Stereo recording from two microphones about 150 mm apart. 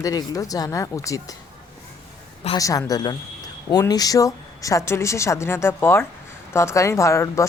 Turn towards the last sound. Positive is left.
turn(degrees=20)  # may be behind; listen again after turning